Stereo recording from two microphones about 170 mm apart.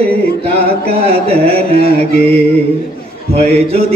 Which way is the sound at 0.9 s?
35° right (ahead or behind).